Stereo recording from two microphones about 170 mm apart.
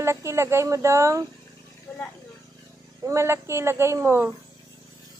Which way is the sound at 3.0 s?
15° right (ahead or behind).